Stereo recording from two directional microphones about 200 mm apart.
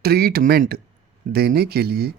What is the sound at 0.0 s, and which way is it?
Speech, 50° right (ahead or behind).